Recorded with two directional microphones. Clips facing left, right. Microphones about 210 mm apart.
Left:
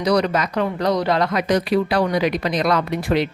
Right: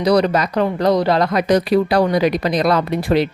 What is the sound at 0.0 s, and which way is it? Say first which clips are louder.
Speech: right 4 dB; 35° right (ahead or behind).